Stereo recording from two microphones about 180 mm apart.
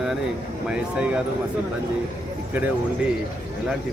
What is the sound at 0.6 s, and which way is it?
Speech, 5° right (ahead or behind).